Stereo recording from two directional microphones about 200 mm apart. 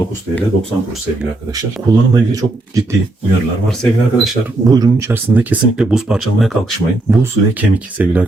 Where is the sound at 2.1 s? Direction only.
15° right (ahead or behind).